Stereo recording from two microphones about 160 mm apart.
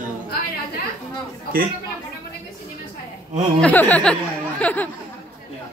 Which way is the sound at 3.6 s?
10° left (ahead or behind).